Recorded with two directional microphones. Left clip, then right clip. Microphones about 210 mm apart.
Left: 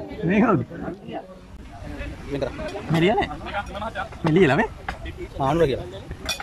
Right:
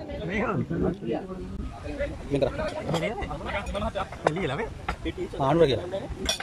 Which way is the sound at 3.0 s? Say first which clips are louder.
Left 11 dB; 45° left (ahead or behind).